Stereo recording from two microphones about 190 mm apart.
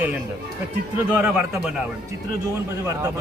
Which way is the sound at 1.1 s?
10° right (ahead or behind).